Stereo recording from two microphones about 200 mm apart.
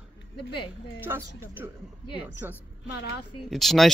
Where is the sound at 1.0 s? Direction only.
10° right (ahead or behind).